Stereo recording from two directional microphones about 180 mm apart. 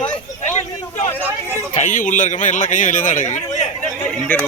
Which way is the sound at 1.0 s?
10° left (ahead or behind).